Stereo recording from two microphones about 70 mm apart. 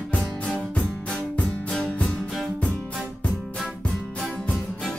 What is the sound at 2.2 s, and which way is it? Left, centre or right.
Music, centre.